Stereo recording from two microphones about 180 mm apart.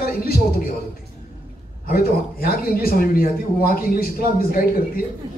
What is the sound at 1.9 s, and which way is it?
Speech, 55° left (ahead or behind).